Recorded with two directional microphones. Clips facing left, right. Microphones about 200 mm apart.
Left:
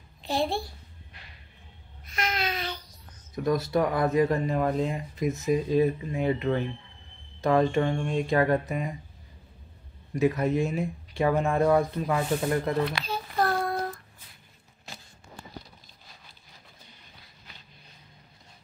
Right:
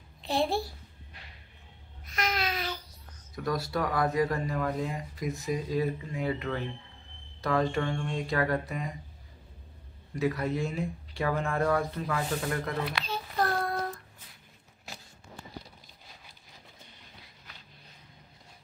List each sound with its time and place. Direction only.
0.2 s a child's voice: centre (ahead or behind)
2.1 s babbling: centre (ahead or behind)
3.3 s speech: 20° left (ahead or behind)
10.1 s speech: 20° left (ahead or behind)
13.0 s a child's voice: centre (ahead or behind)